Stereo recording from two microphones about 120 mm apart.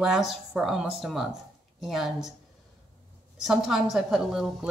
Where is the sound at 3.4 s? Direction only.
Centre (ahead or behind).